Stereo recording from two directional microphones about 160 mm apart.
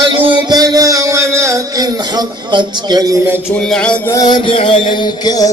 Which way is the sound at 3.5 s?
5° left (ahead or behind).